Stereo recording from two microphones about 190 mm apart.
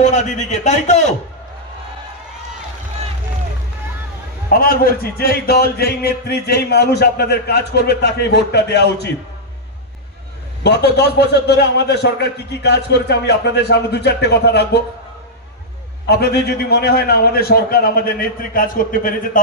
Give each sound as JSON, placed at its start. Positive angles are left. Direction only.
{"t": 0.0, "sound": "a man's voice", "side_deg": 40}
{"t": 4.5, "sound": "a man's voice", "side_deg": 50}
{"t": 10.6, "sound": "a man's voice", "side_deg": 60}
{"t": 16.1, "sound": "a man's voice", "side_deg": 60}